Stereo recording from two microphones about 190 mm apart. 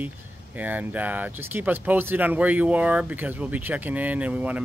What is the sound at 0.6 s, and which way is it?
Speech, 10° right (ahead or behind).